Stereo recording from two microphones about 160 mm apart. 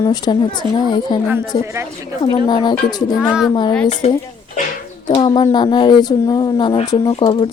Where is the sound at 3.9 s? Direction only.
40° left (ahead or behind).